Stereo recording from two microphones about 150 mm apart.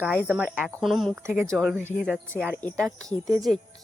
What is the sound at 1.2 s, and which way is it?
Speech, 20° right (ahead or behind).